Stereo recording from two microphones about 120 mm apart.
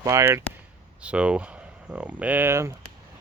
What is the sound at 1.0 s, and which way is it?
Speech, 10° right (ahead or behind).